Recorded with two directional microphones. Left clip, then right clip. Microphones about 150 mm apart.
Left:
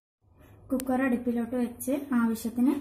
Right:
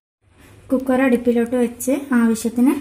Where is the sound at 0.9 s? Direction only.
45° right (ahead or behind).